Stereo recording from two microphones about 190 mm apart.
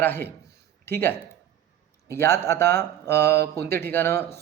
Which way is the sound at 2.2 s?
15° left (ahead or behind).